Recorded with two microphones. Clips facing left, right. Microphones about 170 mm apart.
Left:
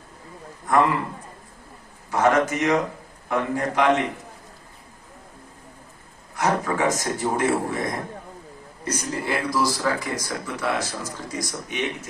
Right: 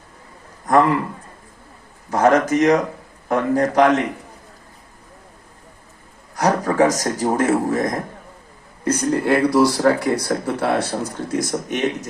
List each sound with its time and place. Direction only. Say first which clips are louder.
0.7 s a man's voice: right 4 dB; 40° right (ahead or behind)
2.0 s speech: right 4 dB; 40° right (ahead or behind)
6.3 s speech: right 5 dB; 40° right (ahead or behind)
8.8 s speech: right 9 dB; 55° right (ahead or behind)
11.7 s a man's voice: right 5 dB; 45° right (ahead or behind)